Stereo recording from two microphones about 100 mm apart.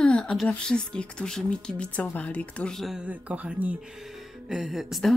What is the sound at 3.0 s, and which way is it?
Speech, 15° right (ahead or behind).